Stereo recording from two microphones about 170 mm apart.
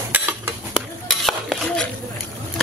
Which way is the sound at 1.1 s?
Centre (ahead or behind).